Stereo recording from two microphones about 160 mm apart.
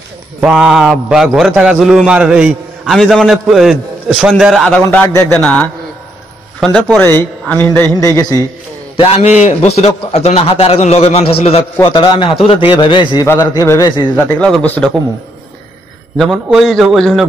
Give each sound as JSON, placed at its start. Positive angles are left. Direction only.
{"t": 0.4, "sound": "a man's voice", "side_deg": -5}
{"t": 4.8, "sound": "a man's voice", "side_deg": 15}
{"t": 8.9, "sound": "a man's voice", "side_deg": 35}
{"t": 14.1, "sound": "a man's voice", "side_deg": 5}
{"t": 16.2, "sound": "a man's voice", "side_deg": 0}